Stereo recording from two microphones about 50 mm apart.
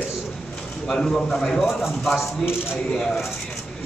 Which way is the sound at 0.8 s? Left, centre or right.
Centre.